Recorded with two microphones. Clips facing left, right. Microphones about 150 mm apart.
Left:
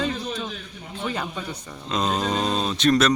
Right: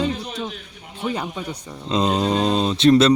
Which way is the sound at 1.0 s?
15° right (ahead or behind).